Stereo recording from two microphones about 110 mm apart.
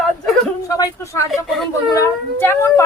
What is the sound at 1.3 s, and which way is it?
Speech, centre (ahead or behind).